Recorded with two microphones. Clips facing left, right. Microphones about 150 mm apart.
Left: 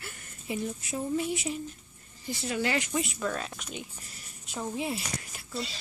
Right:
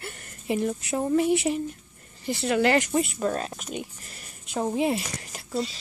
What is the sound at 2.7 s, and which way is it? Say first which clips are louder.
Speech: right 7 dB; 40° right (ahead or behind).